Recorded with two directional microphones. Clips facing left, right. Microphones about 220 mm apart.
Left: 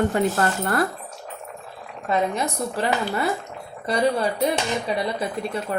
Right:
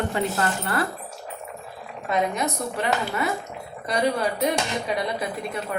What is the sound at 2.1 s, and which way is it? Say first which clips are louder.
Speech: left 1 dB; 30° left (ahead or behind).